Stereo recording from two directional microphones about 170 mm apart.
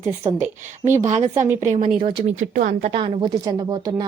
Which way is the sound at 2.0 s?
40° right (ahead or behind).